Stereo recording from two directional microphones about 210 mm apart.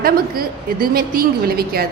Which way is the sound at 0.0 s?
45° right (ahead or behind).